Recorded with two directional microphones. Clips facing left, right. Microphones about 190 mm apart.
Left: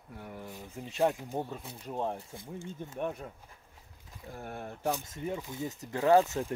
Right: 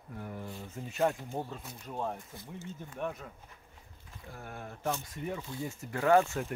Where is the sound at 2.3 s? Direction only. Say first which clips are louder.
Left 3 dB; 25° left (ahead or behind).